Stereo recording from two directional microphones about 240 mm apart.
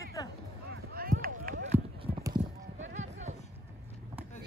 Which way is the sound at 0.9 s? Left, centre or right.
Right.